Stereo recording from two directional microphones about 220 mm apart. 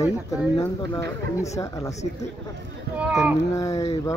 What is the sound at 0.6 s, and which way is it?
Speech, 15° left (ahead or behind).